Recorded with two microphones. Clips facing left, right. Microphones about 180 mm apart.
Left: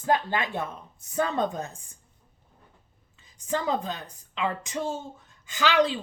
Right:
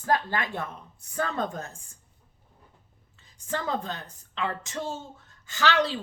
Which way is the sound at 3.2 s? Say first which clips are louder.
Left 3 dB; 15° left (ahead or behind).